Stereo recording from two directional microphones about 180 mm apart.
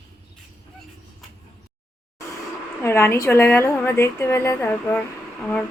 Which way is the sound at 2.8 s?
15° left (ahead or behind).